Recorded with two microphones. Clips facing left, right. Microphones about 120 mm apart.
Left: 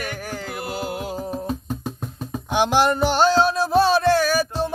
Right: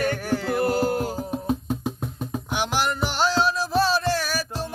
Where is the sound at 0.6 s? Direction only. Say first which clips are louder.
Right 5 dB; 45° right (ahead or behind).